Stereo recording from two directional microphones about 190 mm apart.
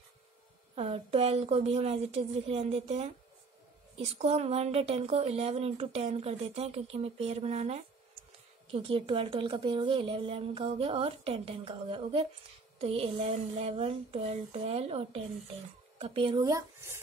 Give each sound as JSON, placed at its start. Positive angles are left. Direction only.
{"t": 0.7, "sound": "a woman's voice", "side_deg": -30}
{"t": 16.4, "sound": "speech", "side_deg": -15}